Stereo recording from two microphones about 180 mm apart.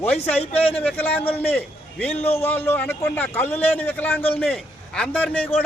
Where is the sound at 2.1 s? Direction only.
35° left (ahead or behind).